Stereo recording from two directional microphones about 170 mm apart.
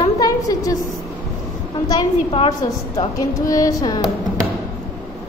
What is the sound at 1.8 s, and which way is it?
Speech, 25° left (ahead or behind).